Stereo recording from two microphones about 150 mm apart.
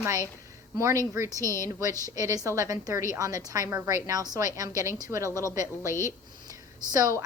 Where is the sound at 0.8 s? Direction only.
20° right (ahead or behind).